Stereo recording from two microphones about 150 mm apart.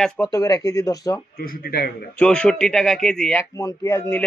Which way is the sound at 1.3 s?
85° left.